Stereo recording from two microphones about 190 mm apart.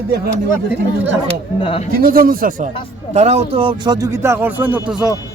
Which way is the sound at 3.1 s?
35° right (ahead or behind).